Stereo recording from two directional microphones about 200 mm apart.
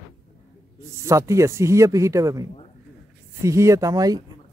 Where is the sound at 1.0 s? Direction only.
15° right (ahead or behind).